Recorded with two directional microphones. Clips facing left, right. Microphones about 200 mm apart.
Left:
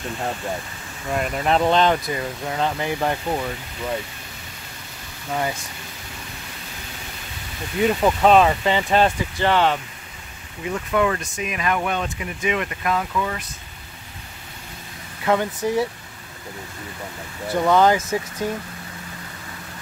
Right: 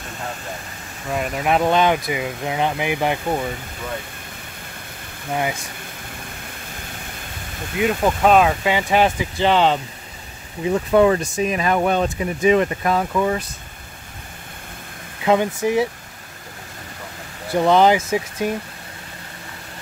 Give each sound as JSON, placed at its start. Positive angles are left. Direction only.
{"t": 1.1, "sound": "speech", "side_deg": 0}
{"t": 5.3, "sound": "speech", "side_deg": -15}
{"t": 7.8, "sound": "speech", "side_deg": 0}
{"t": 10.6, "sound": "speech", "side_deg": -30}
{"t": 15.2, "sound": "speech", "side_deg": -15}
{"t": 17.6, "sound": "speech", "side_deg": -20}